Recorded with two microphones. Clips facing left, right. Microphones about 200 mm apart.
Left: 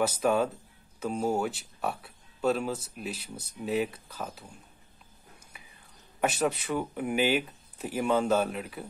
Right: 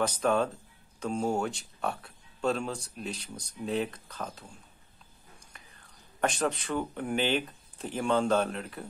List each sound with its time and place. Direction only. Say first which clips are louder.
0.0 s speech: left 1 dB; 10° left (ahead or behind)
6.2 s speech: left 1 dB; 5° left (ahead or behind)